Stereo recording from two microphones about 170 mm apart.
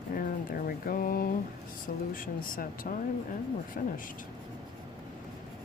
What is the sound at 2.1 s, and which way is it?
Speech, 55° left (ahead or behind).